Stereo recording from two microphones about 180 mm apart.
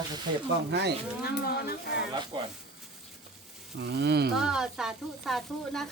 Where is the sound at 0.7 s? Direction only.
70° right (ahead or behind).